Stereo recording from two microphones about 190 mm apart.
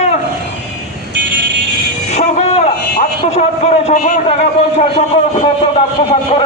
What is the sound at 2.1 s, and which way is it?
A man's voice, 35° left (ahead or behind).